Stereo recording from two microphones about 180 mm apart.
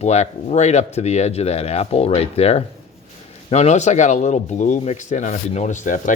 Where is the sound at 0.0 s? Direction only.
40° left (ahead or behind).